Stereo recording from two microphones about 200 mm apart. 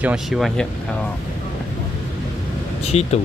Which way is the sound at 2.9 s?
30° left (ahead or behind).